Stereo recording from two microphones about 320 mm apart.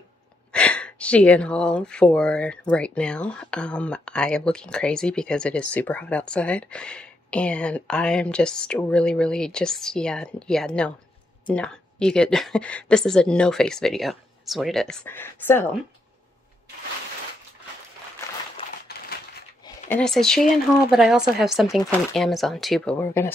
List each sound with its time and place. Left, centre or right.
0.5 s speech: centre
18.9 s typewriter: left
19.9 s speech: centre